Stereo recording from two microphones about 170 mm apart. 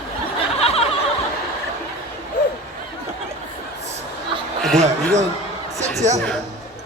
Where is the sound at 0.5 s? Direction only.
35° left (ahead or behind).